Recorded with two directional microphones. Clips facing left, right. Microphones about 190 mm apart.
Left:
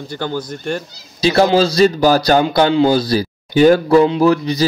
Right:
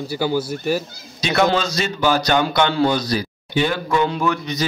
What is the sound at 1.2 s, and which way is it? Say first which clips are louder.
A man's voice: left 6 dB; 30° left (ahead or behind).